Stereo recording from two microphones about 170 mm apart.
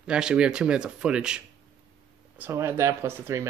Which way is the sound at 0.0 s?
5° right (ahead or behind).